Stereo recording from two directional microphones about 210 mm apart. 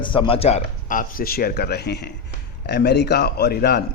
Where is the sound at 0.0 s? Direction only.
25° left (ahead or behind).